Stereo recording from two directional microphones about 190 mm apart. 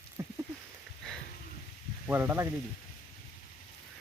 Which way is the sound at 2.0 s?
10° right (ahead or behind).